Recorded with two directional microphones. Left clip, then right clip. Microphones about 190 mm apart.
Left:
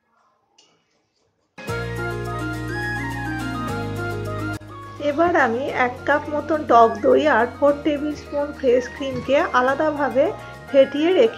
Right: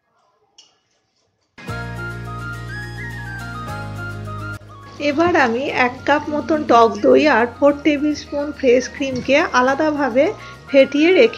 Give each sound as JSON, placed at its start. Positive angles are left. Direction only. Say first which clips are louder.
{"t": 5.0, "sound": "a woman's voice", "louder": "right 2 dB", "side_deg": -30}